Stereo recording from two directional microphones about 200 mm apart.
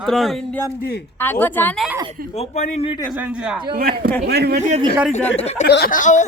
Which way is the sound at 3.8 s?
50° right (ahead or behind).